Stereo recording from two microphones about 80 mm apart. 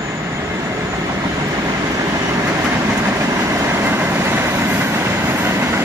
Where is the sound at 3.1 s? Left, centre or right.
Right.